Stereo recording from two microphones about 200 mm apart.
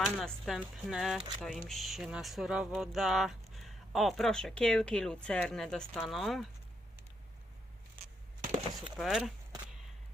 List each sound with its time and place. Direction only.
0.0 s speech: centre (ahead or behind)
8.4 s chopping: 30° right (ahead or behind)
9.0 s speech: centre (ahead or behind)